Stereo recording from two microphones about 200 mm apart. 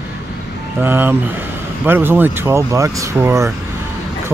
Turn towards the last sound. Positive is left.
turn(degrees=-15)  # may be behind; listen again after turning